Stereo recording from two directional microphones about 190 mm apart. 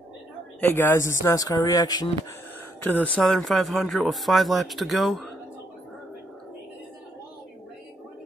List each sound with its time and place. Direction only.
0.6 s speech: 10° left (ahead or behind)
2.8 s speech: 10° left (ahead or behind)